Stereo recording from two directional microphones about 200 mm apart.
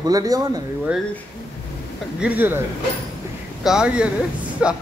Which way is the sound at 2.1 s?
10° right (ahead or behind).